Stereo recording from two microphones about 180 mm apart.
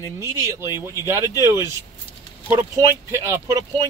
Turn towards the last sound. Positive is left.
turn(degrees=-15)  # may be behind; listen again after turning